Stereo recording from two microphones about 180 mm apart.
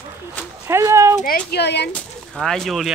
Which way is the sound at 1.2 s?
50° left (ahead or behind).